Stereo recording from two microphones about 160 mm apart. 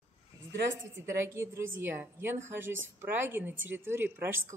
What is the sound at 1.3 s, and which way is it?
A woman's voice, 15° right (ahead or behind).